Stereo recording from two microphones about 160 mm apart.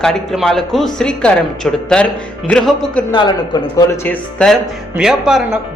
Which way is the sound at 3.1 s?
25° left (ahead or behind).